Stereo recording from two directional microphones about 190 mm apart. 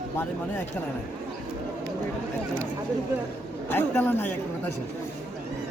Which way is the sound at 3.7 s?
10° left (ahead or behind).